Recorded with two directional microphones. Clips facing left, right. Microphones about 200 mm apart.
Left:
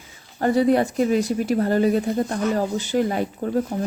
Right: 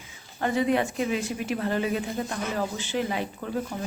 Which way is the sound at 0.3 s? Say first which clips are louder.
Left 6 dB; 40° left (ahead or behind).